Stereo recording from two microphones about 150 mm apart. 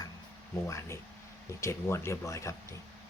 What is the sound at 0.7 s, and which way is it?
Speech, 20° left (ahead or behind).